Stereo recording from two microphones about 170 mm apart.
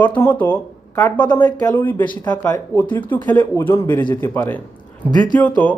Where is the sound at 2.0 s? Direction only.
25° left (ahead or behind).